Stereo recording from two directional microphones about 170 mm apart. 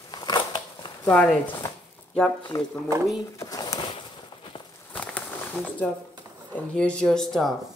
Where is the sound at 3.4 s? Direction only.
20° left (ahead or behind).